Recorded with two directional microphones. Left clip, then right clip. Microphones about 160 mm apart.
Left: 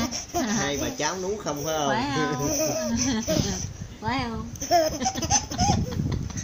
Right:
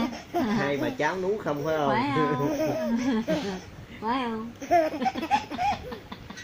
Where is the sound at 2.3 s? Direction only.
35° left (ahead or behind).